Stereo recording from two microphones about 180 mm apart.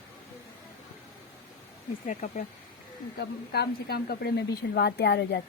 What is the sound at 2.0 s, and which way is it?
Speech, 45° left (ahead or behind).